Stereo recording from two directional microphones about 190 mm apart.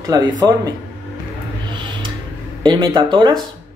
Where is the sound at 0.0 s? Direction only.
20° right (ahead or behind).